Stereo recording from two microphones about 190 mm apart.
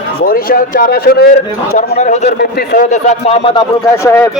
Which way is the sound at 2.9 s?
35° left (ahead or behind).